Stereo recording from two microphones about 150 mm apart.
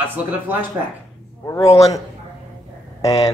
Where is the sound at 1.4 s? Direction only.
20° left (ahead or behind).